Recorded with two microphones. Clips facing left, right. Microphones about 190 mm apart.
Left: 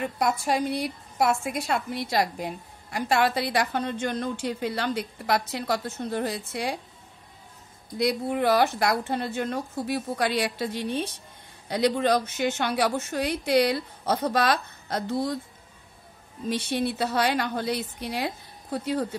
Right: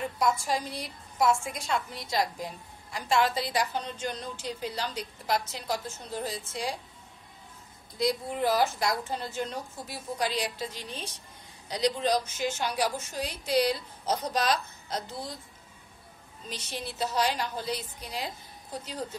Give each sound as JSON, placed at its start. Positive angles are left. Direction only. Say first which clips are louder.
{"t": 0.0, "sound": "a woman's voice", "louder": "left 2 dB", "side_deg": 65}
{"t": 8.0, "sound": "a woman's voice", "louder": "left 4 dB", "side_deg": 65}
{"t": 16.7, "sound": "a woman's voice", "louder": "left 4 dB", "side_deg": 65}